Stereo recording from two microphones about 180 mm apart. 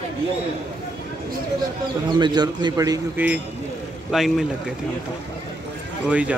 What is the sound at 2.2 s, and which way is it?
Speech, 25° right (ahead or behind).